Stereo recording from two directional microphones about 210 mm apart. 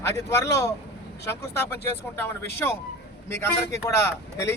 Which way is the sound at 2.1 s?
10° left (ahead or behind).